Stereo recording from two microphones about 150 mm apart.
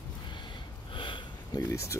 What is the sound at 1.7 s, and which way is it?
Speech, 20° left (ahead or behind).